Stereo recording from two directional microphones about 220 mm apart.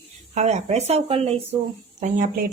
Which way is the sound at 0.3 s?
30° right (ahead or behind).